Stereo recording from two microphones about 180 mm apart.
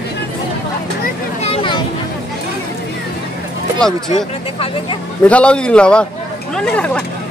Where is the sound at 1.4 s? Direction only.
30° left (ahead or behind).